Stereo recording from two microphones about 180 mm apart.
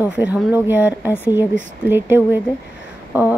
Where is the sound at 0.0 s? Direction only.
10° right (ahead or behind).